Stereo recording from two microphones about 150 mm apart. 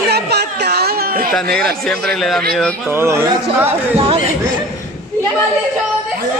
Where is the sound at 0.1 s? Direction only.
90° right.